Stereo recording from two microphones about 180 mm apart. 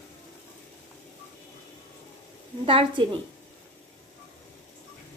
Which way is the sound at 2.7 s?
30° right (ahead or behind).